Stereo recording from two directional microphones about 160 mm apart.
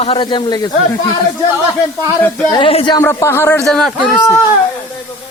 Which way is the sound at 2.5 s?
30° left (ahead or behind).